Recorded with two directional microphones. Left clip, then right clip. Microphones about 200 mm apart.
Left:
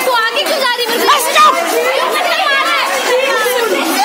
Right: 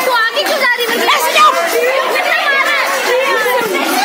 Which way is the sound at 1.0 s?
35° left (ahead or behind).